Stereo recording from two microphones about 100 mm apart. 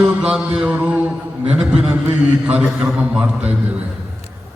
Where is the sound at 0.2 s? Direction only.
10° right (ahead or behind).